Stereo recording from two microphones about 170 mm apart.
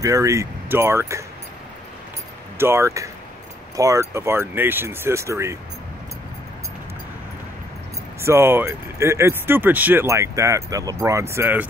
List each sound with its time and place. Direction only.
0.0 s speech: 20° right (ahead or behind)
2.5 s speech: 15° right (ahead or behind)
8.2 s speech: 15° right (ahead or behind)